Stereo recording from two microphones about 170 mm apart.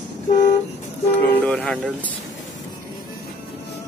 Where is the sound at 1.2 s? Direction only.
10° left (ahead or behind).